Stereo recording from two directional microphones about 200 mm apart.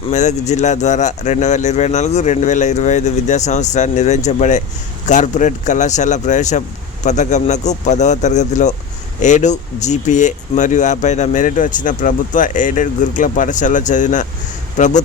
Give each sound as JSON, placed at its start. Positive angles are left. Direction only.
{"t": 0.1, "sound": "speech", "side_deg": 35}